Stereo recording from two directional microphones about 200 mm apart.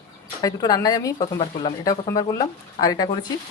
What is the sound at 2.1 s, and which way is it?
Speech, 15° left (ahead or behind).